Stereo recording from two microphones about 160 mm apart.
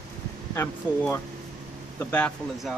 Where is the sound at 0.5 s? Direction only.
15° left (ahead or behind).